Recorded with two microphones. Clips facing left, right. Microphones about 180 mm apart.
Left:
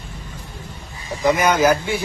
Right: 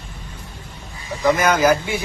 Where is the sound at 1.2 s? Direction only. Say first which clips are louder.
Even; 15° left (ahead or behind).